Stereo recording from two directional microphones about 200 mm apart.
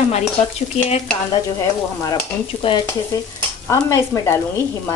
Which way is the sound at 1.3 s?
20° left (ahead or behind).